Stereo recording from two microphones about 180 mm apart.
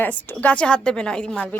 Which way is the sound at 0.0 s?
10° left (ahead or behind).